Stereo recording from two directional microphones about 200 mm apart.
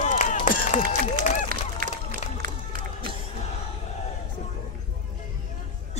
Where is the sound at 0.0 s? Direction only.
35° left (ahead or behind).